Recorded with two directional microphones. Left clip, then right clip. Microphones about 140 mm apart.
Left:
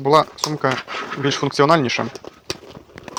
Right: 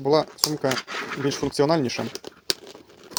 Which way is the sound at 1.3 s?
35° right (ahead or behind).